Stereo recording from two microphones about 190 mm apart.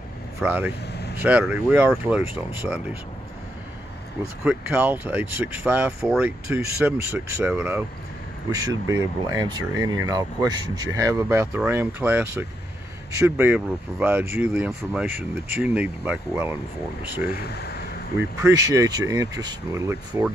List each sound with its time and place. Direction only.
0.4 s speech: 10° right (ahead or behind)
4.2 s speech: 10° right (ahead or behind)
17.3 s speech: 55° left (ahead or behind)
18.4 s speech: 15° right (ahead or behind)